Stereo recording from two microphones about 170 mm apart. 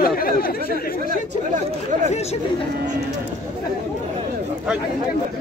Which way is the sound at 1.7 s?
45° right (ahead or behind).